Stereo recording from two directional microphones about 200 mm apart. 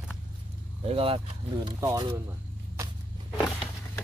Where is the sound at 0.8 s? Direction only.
30° right (ahead or behind).